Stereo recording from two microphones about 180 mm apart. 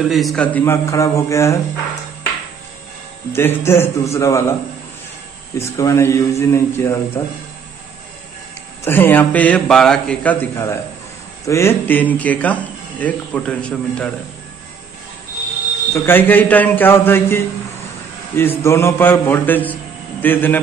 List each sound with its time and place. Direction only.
0.1 s speech: centre (ahead or behind); by 1.6 s 15° left (ahead or behind)
3.3 s speech: 15° left (ahead or behind)
8.8 s speech: 10° left (ahead or behind)
15.9 s a man's voice: 10° left (ahead or behind)